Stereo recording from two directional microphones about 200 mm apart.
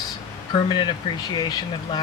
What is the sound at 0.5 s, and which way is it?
Speech, 20° left (ahead or behind).